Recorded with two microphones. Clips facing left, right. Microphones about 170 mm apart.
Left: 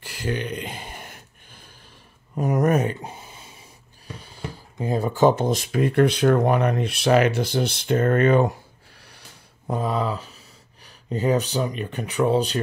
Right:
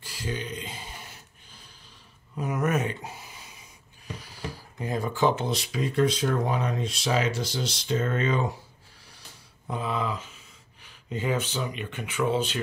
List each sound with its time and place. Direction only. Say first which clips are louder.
0.0 s a sound: left 6 dB; 60° left (ahead or behind)
2.3 s speech: left 6 dB; 40° left (ahead or behind); by 8.5 s 60° left (ahead or behind)
9.7 s speech: left 5 dB; 40° left (ahead or behind)